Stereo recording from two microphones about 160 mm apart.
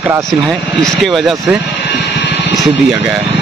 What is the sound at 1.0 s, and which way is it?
Speech, centre (ahead or behind).